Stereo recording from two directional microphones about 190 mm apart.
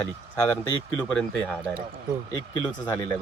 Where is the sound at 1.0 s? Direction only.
5° left (ahead or behind).